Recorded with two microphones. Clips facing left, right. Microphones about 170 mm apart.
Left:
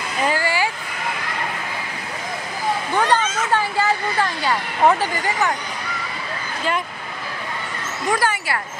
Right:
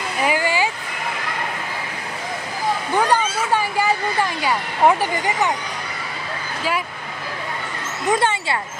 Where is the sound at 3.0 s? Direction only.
10° right (ahead or behind).